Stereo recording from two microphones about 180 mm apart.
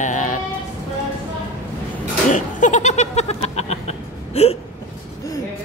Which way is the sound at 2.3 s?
45° left (ahead or behind).